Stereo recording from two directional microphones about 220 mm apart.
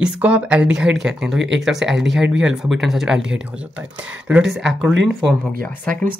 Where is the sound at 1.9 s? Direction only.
55° right (ahead or behind).